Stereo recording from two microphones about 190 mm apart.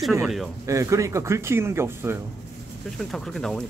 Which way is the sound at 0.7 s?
15° right (ahead or behind).